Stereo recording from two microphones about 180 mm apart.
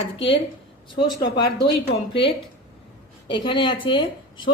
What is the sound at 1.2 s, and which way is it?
Speech, 60° left (ahead or behind).